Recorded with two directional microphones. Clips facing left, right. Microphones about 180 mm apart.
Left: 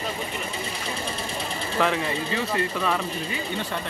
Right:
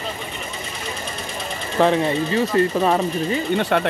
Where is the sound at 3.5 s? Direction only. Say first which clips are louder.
Right 14 dB; 70° right (ahead or behind).